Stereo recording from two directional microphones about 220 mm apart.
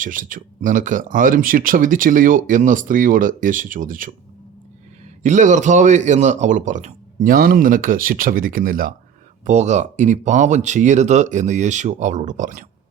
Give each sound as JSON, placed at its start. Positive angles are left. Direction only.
{"t": 0.0, "sound": "speech", "side_deg": -35}
{"t": 5.2, "sound": "speech", "side_deg": -35}